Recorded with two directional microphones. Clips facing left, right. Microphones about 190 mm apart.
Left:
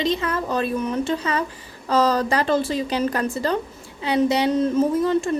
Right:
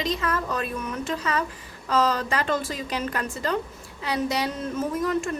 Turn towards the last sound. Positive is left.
turn(degrees=30)  # may be behind; listen again after turning